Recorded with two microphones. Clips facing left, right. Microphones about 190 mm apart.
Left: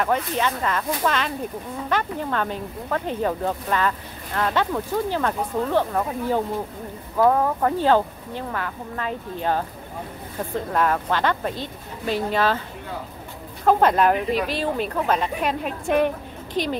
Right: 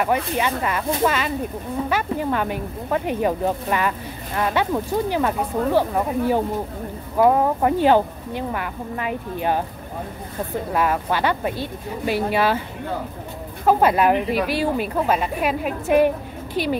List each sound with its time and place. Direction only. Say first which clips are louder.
0.0 s speech: right 1 dB; 10° right (ahead or behind)
10.7 s speech: right 1 dB; 10° right (ahead or behind)
13.7 s speech: right 1 dB; 10° right (ahead or behind)